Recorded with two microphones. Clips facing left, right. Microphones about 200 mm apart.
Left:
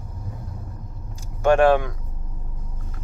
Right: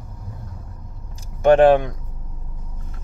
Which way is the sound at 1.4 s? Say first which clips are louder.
Right 4 dB; 20° right (ahead or behind).